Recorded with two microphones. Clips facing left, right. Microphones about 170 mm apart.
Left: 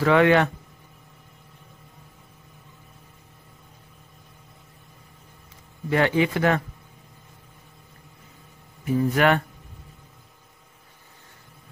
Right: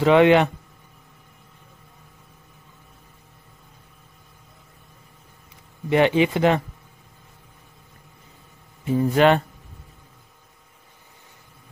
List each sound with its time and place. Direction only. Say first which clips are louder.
0.0 s speech: right 3 dB; 20° right (ahead or behind)
5.9 s speech: right 3 dB; 20° right (ahead or behind)
8.8 s speech: right 3 dB; 25° right (ahead or behind)